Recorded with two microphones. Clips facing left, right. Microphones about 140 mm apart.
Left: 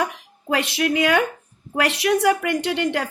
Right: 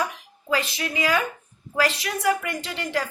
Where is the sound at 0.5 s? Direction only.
80° left.